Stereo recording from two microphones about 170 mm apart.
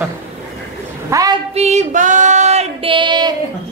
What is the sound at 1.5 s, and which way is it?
Female singing, 40° right (ahead or behind).